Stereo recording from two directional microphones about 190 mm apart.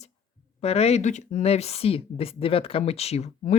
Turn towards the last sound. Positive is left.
turn(degrees=35)  # may be behind; listen again after turning